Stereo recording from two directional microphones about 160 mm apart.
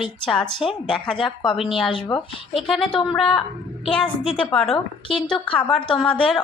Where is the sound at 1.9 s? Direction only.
25° left (ahead or behind).